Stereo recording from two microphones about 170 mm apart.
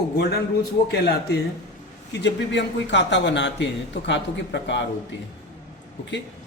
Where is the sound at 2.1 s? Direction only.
90° left.